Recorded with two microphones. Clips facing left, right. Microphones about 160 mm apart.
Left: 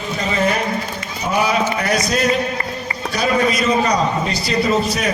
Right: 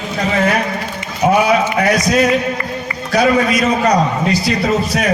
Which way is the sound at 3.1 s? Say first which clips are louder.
Right 5 dB; 60° right (ahead or behind).